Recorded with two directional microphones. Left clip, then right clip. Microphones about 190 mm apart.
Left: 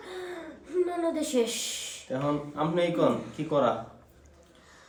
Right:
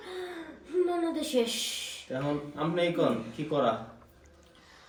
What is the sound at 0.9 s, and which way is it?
Speech, 5° left (ahead or behind).